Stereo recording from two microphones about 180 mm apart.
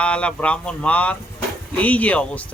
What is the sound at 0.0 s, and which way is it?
A man's voice, 5° left (ahead or behind).